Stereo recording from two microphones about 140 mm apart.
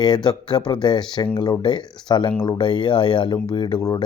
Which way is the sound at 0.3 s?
30° left (ahead or behind).